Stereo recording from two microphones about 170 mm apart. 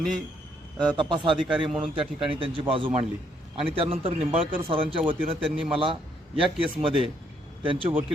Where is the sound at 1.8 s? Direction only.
30° right (ahead or behind).